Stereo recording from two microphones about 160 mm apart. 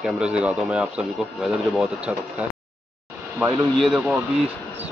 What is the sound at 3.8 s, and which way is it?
Speech, 5° right (ahead or behind).